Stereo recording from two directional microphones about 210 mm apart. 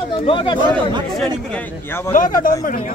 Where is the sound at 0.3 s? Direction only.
25° left (ahead or behind).